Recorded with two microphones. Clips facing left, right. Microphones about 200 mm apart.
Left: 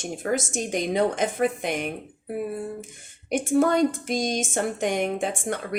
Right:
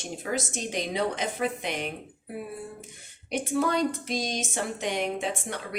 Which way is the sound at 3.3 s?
50° left (ahead or behind).